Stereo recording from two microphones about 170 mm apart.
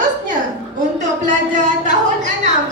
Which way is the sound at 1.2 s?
45° right (ahead or behind).